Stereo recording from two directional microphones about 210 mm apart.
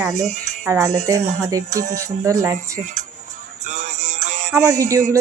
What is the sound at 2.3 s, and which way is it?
Speech, 15° right (ahead or behind).